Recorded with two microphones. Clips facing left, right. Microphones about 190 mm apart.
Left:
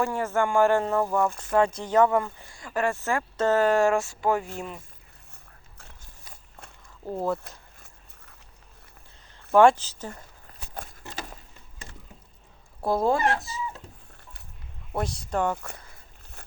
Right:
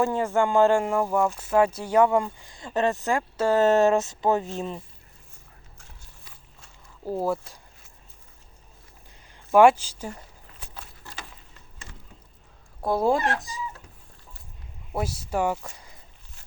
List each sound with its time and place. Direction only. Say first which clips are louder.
0.0 s speech: right 3 dB; 15° right (ahead or behind)
3.6 s speech: right 4 dB; 20° right (ahead or behind)
7.0 s speech: right 2 dB; 5° right (ahead or behind)
9.5 s speech: right 1 dB; 10° right (ahead or behind)
10.8 s a sound: left 7 dB; 50° left (ahead or behind)
12.8 s speech: even; centre (ahead or behind)
13.1 s speech: even; 15° right (ahead or behind)
14.9 s speech: right 1 dB; 5° right (ahead or behind)